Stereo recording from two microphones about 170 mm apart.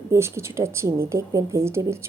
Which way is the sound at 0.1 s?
15° right (ahead or behind).